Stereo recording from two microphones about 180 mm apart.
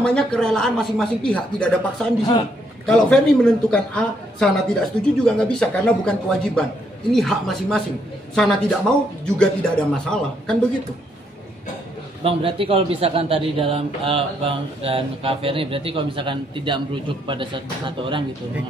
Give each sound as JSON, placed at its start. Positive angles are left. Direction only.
{"t": 0.0, "sound": "a man's voice", "side_deg": 5}
{"t": 2.9, "sound": "a man's voice", "side_deg": 5}
{"t": 12.2, "sound": "a man's voice", "side_deg": -30}